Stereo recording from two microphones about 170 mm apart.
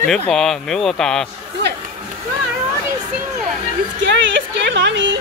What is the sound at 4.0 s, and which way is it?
Music, 90° right.